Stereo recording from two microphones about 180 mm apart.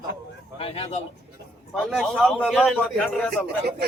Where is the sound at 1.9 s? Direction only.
Centre (ahead or behind).